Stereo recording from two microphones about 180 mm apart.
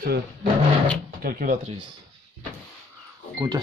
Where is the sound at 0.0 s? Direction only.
55° right (ahead or behind).